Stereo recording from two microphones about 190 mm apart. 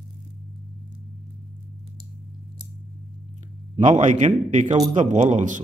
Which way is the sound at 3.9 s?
40° right (ahead or behind).